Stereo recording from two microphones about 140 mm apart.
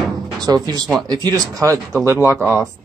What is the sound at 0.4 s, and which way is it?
Speech, 30° right (ahead or behind).